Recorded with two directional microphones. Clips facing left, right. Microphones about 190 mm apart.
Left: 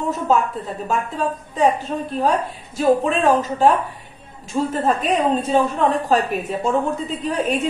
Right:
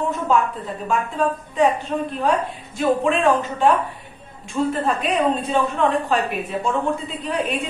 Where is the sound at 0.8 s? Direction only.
40° left (ahead or behind).